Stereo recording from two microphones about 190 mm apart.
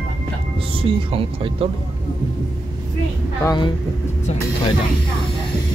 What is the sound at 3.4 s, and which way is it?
Speech, 20° left (ahead or behind).